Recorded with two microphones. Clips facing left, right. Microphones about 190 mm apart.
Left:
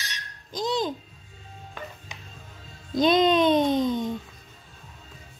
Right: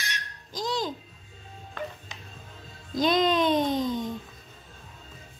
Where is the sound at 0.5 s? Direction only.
20° left (ahead or behind).